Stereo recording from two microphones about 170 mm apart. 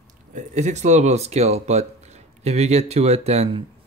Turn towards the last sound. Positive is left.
turn(degrees=-40)  # may be behind; listen again after turning